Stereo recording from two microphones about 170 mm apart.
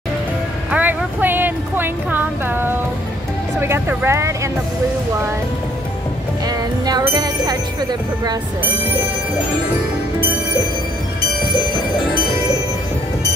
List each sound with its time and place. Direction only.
0.7 s a sound: 10° right (ahead or behind)
3.6 s speech: 15° right (ahead or behind)
6.4 s music: 25° right (ahead or behind)